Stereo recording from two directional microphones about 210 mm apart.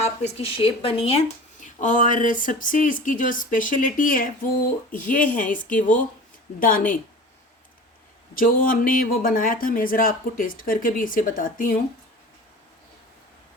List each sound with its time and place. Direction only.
0.0 s speech: 30° left (ahead or behind)
1.6 s speech: 35° left (ahead or behind)
6.6 s speech: 40° left (ahead or behind)
8.4 s speech: 40° left (ahead or behind)